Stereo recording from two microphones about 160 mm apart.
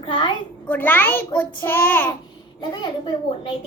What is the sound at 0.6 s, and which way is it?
A woman's voice, 10° left (ahead or behind).